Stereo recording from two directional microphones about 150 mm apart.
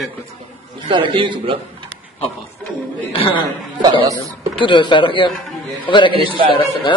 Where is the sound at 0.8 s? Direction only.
30° right (ahead or behind).